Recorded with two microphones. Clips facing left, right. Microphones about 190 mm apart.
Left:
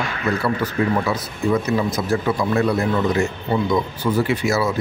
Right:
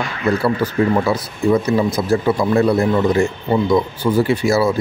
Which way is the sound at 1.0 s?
30° right (ahead or behind).